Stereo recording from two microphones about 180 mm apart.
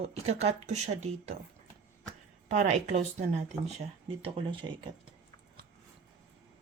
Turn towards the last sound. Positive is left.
turn(degrees=-30)  # may be behind; listen again after turning